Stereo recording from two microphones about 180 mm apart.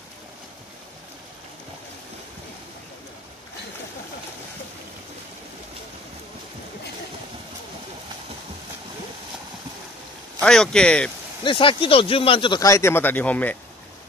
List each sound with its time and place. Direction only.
10.4 s a man's voice: 5° left (ahead or behind)
11.4 s speech: 30° left (ahead or behind); by 13.6 s 10° left (ahead or behind)